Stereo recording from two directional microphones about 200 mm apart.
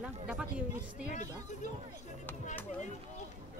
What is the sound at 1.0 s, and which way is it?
Speech, 35° left (ahead or behind).